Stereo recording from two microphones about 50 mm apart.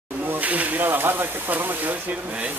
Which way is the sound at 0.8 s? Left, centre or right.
Right.